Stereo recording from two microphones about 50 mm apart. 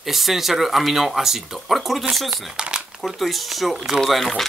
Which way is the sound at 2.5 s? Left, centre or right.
Centre.